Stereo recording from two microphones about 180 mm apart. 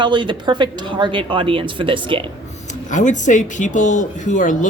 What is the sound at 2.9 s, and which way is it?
Speech, 45° left (ahead or behind).